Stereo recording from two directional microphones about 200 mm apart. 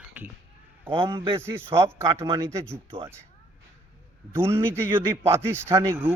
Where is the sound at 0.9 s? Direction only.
25° right (ahead or behind).